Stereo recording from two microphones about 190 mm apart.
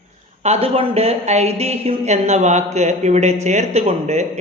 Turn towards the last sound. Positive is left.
turn(degrees=-35)  # may be behind; listen again after turning